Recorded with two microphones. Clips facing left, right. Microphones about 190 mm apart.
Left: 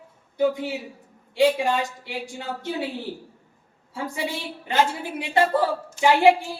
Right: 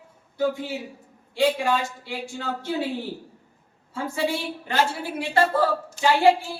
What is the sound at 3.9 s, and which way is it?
A woman's voice, 15° left (ahead or behind).